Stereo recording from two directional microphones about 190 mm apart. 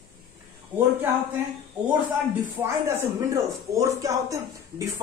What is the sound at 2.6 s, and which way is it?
Speech, 15° right (ahead or behind).